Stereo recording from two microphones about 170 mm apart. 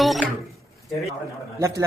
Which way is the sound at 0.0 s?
Centre (ahead or behind).